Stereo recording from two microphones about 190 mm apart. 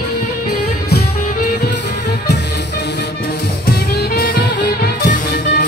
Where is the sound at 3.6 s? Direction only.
55° left (ahead or behind).